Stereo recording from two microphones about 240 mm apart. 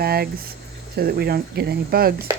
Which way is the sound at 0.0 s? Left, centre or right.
Right.